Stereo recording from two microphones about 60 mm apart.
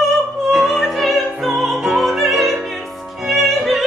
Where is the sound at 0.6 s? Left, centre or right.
Centre.